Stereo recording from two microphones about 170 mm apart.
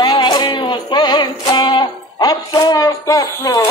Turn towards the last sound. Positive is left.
turn(degrees=25)  # may be behind; listen again after turning